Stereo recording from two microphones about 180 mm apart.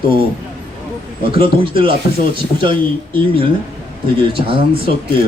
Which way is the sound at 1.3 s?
30° right (ahead or behind).